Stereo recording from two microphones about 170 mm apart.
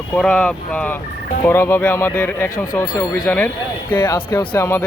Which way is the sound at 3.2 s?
10° left (ahead or behind).